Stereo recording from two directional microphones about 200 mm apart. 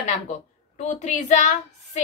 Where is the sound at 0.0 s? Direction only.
35° left (ahead or behind).